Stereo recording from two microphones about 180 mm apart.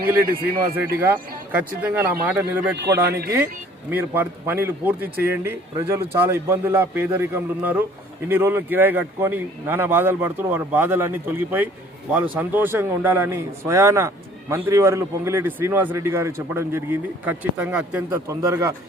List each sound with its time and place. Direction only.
0.2 s a man's voice: 55° right (ahead or behind)
0.9 s a man's voice: 10° right (ahead or behind)
2.8 s a man's voice: 65° right (ahead or behind)
3.9 s a man's voice: 10° right (ahead or behind)